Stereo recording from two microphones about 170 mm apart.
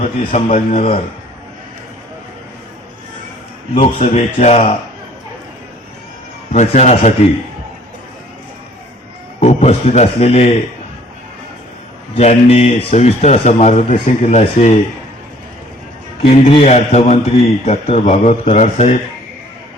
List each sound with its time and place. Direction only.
0.0 s a man's voice: 40° left (ahead or behind)
3.8 s a man's voice: 40° left (ahead or behind)
6.5 s a man's voice: 40° left (ahead or behind)
9.4 s a man's voice: 40° left (ahead or behind)
12.1 s a man's voice: 35° left (ahead or behind)
16.2 s a man's voice: 40° left (ahead or behind)